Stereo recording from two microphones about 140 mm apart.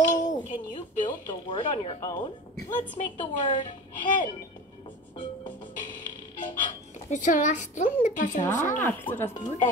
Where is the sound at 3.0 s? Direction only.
55° left (ahead or behind).